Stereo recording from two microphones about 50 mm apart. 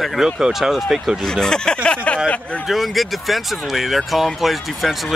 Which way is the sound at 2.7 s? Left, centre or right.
Centre.